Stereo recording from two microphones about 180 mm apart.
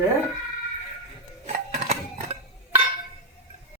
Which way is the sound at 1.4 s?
40° right (ahead or behind).